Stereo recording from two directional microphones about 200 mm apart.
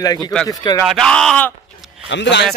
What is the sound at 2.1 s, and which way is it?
Speech, 60° left (ahead or behind).